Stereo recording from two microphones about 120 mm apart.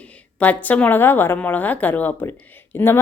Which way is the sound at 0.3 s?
15° left (ahead or behind).